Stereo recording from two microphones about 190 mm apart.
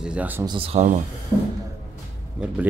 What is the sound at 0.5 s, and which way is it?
Speech, 30° right (ahead or behind).